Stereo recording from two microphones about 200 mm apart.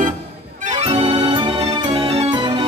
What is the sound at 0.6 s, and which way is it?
Music, 30° right (ahead or behind).